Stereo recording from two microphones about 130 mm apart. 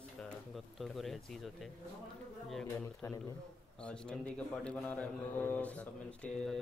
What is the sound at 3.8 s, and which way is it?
Speech, 5° left (ahead or behind).